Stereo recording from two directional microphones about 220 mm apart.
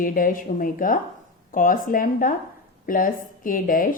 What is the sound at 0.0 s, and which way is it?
A woman's voice, 40° left (ahead or behind).